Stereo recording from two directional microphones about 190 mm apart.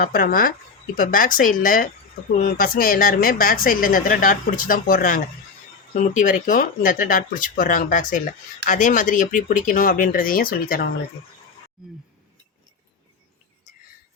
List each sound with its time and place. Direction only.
0.0 s speech: 50° left (ahead or behind)
11.8 s speech: centre (ahead or behind)